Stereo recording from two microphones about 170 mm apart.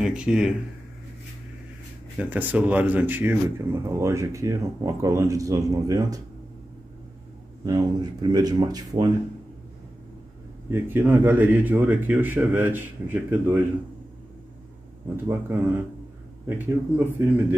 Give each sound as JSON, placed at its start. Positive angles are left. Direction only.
{"t": 0.0, "sound": "speech", "side_deg": -5}
{"t": 2.1, "sound": "a man's voice", "side_deg": -10}
{"t": 7.6, "sound": "speech", "side_deg": -25}
{"t": 10.7, "sound": "a man's voice", "side_deg": -10}
{"t": 15.2, "sound": "a man's voice", "side_deg": -10}